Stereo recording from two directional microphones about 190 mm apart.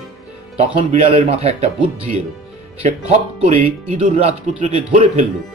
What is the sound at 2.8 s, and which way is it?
Speech, 40° right (ahead or behind).